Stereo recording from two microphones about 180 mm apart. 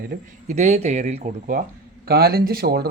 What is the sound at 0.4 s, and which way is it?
Speech, 40° right (ahead or behind).